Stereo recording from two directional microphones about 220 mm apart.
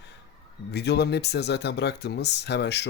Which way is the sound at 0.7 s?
50° left (ahead or behind).